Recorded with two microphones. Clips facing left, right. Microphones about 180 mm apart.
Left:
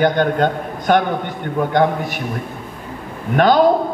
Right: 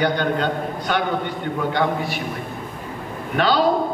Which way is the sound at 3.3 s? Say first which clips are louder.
Left 6 dB; 50° left (ahead or behind).